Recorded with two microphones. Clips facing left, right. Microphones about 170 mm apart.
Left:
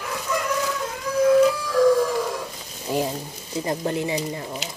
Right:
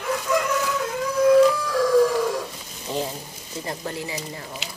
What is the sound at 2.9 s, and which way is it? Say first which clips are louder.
Frying: left 3 dB; 10° left (ahead or behind).